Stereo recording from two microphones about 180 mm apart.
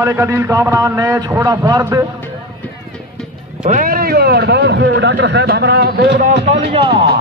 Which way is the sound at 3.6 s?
50° right (ahead or behind).